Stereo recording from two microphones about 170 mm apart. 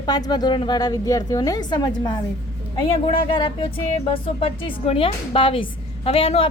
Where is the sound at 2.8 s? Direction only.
30° left (ahead or behind).